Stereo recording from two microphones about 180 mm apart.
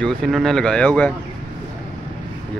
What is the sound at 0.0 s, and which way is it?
Speech, 5° left (ahead or behind).